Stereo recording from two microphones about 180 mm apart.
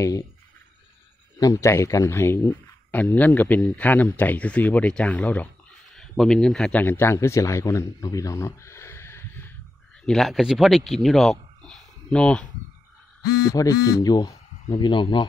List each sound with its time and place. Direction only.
1.4 s speech: 15° left (ahead or behind)
10.0 s speech: centre (ahead or behind)
13.2 s a man's voice: 20° left (ahead or behind)